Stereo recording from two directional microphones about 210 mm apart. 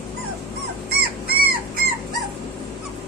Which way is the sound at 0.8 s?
45° right (ahead or behind).